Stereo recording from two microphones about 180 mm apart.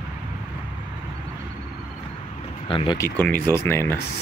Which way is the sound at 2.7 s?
30° left (ahead or behind).